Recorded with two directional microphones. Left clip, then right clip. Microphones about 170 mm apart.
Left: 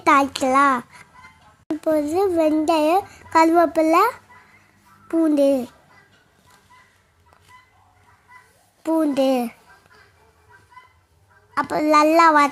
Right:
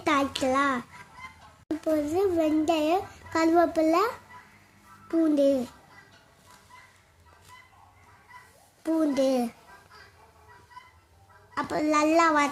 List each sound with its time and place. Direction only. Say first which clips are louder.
0.0 s a child's voice: left 9 dB; 35° left (ahead or behind)
1.8 s a child's voice: left 6 dB; 35° left (ahead or behind)
8.8 s a child's voice: left 6 dB; 30° left (ahead or behind)
11.5 s a child's voice: left 9 dB; 35° left (ahead or behind)